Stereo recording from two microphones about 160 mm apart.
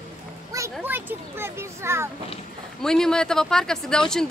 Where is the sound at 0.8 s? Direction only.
10° right (ahead or behind).